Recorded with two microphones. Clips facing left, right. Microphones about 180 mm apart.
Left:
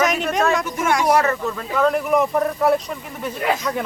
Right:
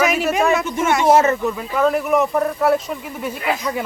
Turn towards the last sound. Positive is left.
turn(degrees=-5)  # may be behind; listen again after turning